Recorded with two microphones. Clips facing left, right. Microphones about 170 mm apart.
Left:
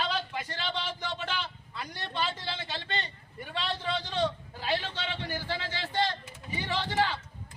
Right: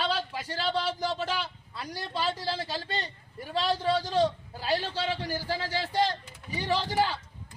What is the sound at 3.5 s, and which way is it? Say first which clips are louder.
A man's voice: right 6 dB; 40° right (ahead or behind).